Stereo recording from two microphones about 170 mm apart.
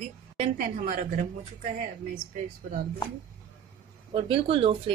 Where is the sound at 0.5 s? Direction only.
55° right (ahead or behind).